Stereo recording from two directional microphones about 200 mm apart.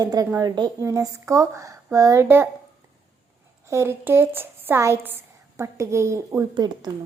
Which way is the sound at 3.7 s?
15° right (ahead or behind).